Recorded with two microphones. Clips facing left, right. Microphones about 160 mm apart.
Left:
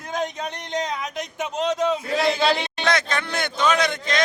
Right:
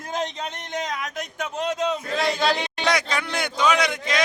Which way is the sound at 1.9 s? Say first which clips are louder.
Left 3 dB; centre (ahead or behind).